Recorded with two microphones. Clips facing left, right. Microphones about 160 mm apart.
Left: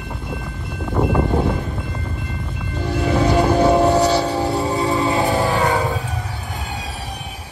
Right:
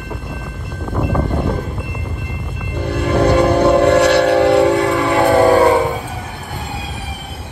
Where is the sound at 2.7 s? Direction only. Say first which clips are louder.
Right 3 dB; 60° right (ahead or behind).